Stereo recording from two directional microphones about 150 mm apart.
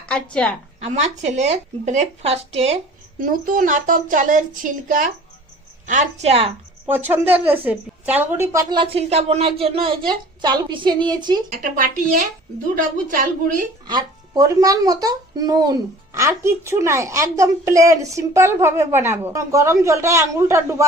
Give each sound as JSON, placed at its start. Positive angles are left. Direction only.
{"t": 0.0, "sound": "a woman's voice", "side_deg": 5}
{"t": 0.8, "sound": "speech", "side_deg": -50}
{"t": 3.2, "sound": "a child's voice", "side_deg": -65}
{"t": 6.8, "sound": "a woman's voice", "side_deg": -15}
{"t": 8.7, "sound": "a woman's voice", "side_deg": -35}
{"t": 11.4, "sound": "a child's voice", "side_deg": -65}
{"t": 13.8, "sound": "speech", "side_deg": -25}